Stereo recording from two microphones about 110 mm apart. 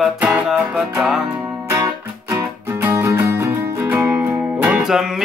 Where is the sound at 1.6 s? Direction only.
25° right (ahead or behind).